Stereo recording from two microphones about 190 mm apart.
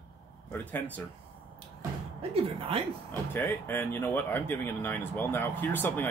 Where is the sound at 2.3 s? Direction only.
30° right (ahead or behind).